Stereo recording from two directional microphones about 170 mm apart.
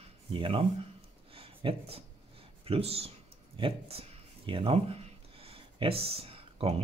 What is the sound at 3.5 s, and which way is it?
Speech, 30° right (ahead or behind).